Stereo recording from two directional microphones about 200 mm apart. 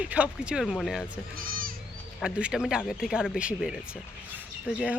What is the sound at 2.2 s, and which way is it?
Speech, 5° right (ahead or behind).